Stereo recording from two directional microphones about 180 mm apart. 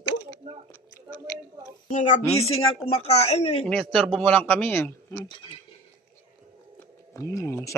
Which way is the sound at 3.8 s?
Centre (ahead or behind).